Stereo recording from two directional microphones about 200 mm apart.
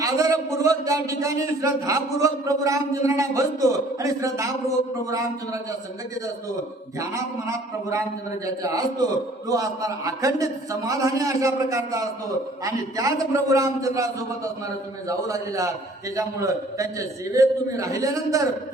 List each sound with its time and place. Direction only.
0.0 s a man's voice: 15° right (ahead or behind)
7.0 s a man's voice: 15° right (ahead or behind)